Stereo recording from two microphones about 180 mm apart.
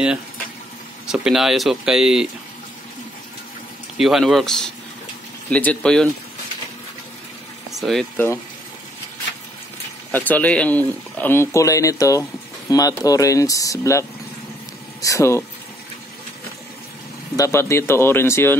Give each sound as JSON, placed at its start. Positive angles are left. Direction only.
{"t": 1.0, "sound": "speech", "side_deg": -5}
{"t": 4.0, "sound": "speech", "side_deg": 0}
{"t": 7.8, "sound": "speech", "side_deg": 0}
{"t": 10.1, "sound": "speech", "side_deg": 10}
{"t": 17.4, "sound": "speech", "side_deg": 15}